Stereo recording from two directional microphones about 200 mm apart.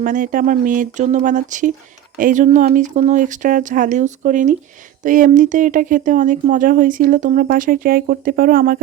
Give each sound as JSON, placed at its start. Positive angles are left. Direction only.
{"t": 0.0, "sound": "speech", "side_deg": -40}